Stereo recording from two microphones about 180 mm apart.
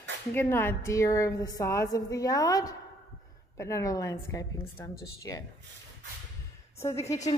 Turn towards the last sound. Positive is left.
turn(degrees=15)  # may be behind; listen again after turning